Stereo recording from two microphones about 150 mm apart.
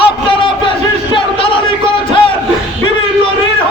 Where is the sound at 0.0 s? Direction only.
35° left (ahead or behind).